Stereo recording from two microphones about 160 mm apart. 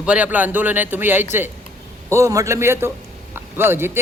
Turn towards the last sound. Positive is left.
turn(degrees=-15)  # may be behind; listen again after turning